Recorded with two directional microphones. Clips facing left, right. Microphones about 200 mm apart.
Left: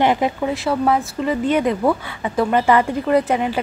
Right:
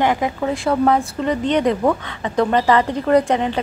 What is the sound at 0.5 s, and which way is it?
Speech, 5° left (ahead or behind).